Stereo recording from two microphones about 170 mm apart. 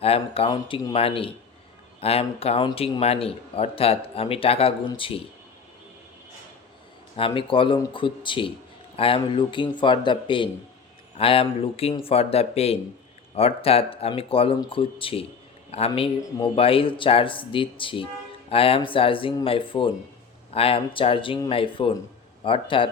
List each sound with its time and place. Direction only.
0.0 s a man's voice: 35° left (ahead or behind)
0.5 s speech: 25° left (ahead or behind)
0.9 s a man's voice: 35° left (ahead or behind)
7.2 s a man's voice: 30° left (ahead or behind)